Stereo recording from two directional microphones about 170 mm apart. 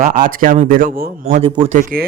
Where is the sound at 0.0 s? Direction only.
50° right (ahead or behind).